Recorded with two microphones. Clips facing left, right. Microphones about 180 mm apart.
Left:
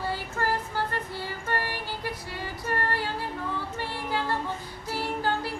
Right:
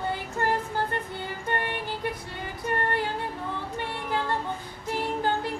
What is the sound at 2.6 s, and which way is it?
Music, 20° right (ahead or behind).